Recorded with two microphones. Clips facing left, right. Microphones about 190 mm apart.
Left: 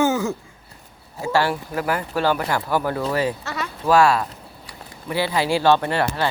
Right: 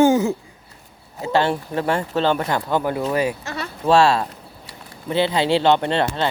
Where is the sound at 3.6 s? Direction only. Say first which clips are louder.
Right 1 dB; 25° right (ahead or behind).